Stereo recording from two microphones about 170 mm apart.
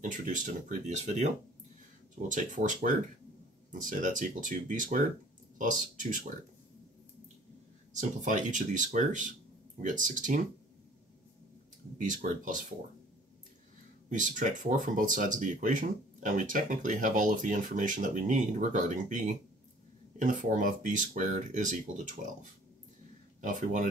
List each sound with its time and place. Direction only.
0.0 s speech: 50° right (ahead or behind)
7.9 s speech: 45° right (ahead or behind)
12.0 s speech: 50° right (ahead or behind)
14.0 s speech: 50° right (ahead or behind)